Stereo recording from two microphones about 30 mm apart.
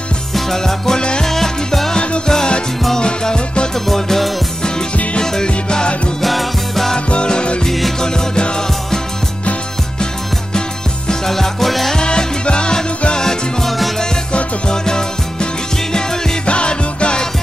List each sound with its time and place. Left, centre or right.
0.3 s music: centre
0.9 s music: left
1.2 s music: centre; by 3.6 s left
3.9 s music: centre
5.2 s music: left
6.2 s music: centre
7.1 s music: left
11.2 s music: centre
12.1 s music: left
13.6 s music: centre
14.7 s music: left
16.4 s music: left